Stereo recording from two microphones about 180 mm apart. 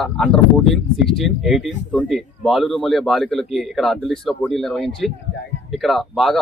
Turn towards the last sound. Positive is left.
turn(degrees=0)  # may be behind; listen again after turning